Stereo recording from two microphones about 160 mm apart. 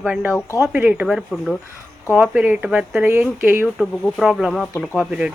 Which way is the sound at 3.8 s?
Centre (ahead or behind).